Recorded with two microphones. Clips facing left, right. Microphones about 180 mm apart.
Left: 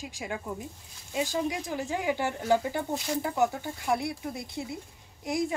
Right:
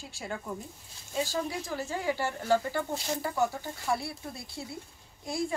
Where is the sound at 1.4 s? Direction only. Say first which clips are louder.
Left 3 dB; 15° left (ahead or behind).